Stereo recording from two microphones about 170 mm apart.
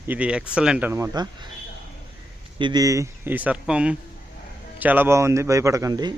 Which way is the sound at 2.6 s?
25° right (ahead or behind).